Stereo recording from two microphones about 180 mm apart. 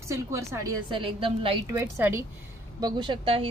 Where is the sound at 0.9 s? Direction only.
30° right (ahead or behind).